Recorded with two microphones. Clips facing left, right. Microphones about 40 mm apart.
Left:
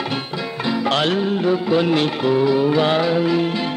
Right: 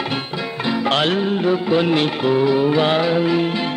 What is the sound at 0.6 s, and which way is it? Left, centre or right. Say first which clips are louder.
Music: right 1 dB; right.